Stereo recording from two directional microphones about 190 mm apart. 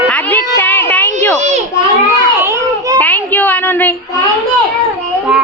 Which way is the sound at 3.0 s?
10° left (ahead or behind).